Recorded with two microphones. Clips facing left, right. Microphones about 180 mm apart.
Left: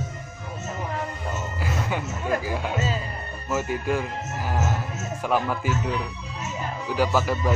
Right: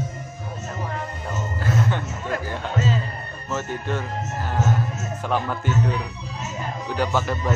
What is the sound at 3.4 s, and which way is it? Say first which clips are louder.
A man's voice: left 2 dB; 10° left (ahead or behind).